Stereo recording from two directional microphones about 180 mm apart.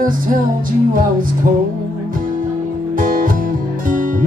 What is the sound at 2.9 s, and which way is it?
Music, 50° right (ahead or behind).